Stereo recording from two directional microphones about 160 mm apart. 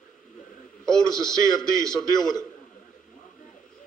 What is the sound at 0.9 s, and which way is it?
A man's voice, 5° left (ahead or behind).